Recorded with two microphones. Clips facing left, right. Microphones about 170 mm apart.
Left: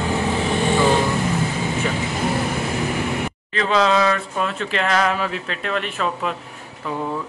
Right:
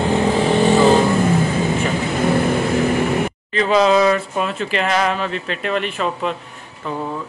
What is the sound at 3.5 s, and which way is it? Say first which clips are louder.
A man's voice: right 4 dB; 5° right (ahead or behind).